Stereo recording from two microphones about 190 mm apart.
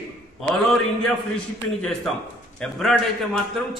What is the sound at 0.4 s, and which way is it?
A man's voice, centre (ahead or behind).